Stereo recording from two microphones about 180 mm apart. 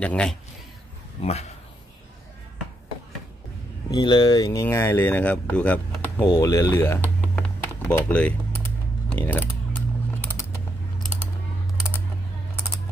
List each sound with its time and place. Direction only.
0.0 s a man's voice: 5° left (ahead or behind)
1.2 s a man's voice: 35° left (ahead or behind)
3.9 s speech: 25° left (ahead or behind)
7.3 s typing: 10° left (ahead or behind)
9.1 s a sound: 10° left (ahead or behind)